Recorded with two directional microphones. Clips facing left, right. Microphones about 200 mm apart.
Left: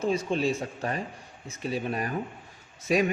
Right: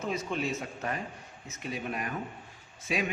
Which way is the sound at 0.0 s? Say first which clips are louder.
Left 6 dB; 30° left (ahead or behind).